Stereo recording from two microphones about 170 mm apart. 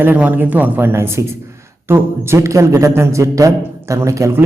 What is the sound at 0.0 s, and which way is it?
A man's voice, 10° right (ahead or behind).